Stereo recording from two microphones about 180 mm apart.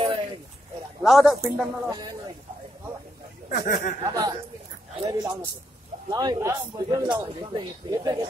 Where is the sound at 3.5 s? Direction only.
65° left (ahead or behind).